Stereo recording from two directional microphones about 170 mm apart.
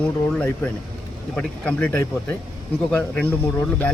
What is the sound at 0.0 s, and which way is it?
Speech, 10° left (ahead or behind).